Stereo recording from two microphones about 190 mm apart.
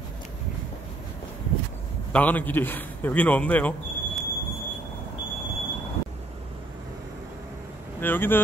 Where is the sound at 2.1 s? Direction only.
10° left (ahead or behind).